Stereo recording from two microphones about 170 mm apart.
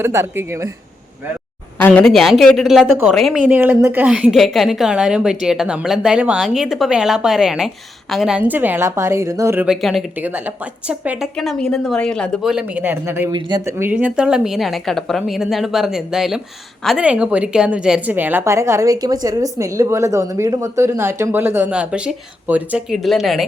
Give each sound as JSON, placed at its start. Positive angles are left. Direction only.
{"t": 0.0, "sound": "a woman's voice", "side_deg": -15}
{"t": 1.8, "sound": "a woman's voice", "side_deg": 5}
{"t": 9.6, "sound": "a woman's voice", "side_deg": 0}
{"t": 10.2, "sound": "a woman's voice", "side_deg": -10}
{"t": 11.3, "sound": "a woman's voice", "side_deg": 5}
{"t": 13.3, "sound": "speech", "side_deg": -25}
{"t": 13.7, "sound": "a woman's voice", "side_deg": -15}